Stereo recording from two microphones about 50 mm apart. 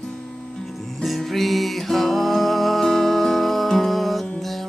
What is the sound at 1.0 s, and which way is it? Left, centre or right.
Music, centre.